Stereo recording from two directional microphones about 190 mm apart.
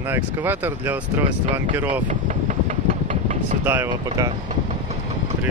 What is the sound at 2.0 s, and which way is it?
Vehicle, 40° right (ahead or behind).